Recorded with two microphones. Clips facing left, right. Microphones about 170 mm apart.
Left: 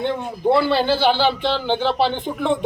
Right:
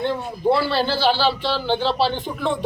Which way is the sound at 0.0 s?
20° left (ahead or behind).